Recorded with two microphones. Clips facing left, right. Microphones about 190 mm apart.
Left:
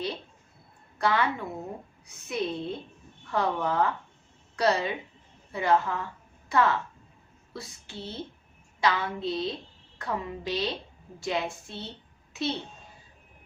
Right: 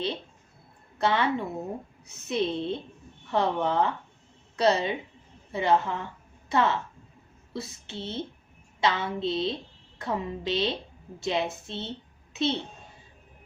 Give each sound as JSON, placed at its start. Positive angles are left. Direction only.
{"t": 0.9, "sound": "a woman's voice", "side_deg": -25}